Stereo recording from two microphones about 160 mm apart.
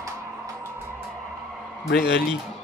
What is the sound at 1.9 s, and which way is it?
Speech, 90° left.